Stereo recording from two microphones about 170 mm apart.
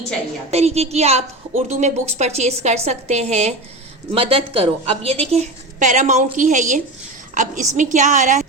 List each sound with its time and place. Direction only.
0.5 s a woman's voice: 40° right (ahead or behind)